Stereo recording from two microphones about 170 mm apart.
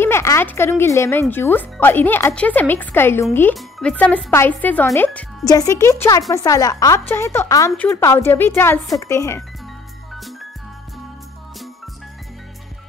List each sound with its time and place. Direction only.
0.0 s a woman's voice: 15° left (ahead or behind)